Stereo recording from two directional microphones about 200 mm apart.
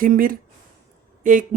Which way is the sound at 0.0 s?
45° right (ahead or behind).